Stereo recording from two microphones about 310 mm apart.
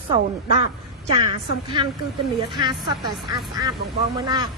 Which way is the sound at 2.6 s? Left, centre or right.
Centre.